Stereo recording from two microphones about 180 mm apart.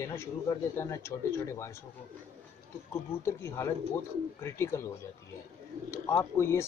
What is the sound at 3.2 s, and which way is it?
Speech, 15° left (ahead or behind).